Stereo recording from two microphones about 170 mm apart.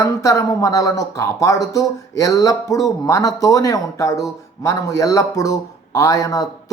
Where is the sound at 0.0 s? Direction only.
20° left (ahead or behind).